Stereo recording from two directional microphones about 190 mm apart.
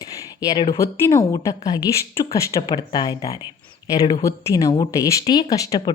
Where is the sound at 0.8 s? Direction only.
15° left (ahead or behind).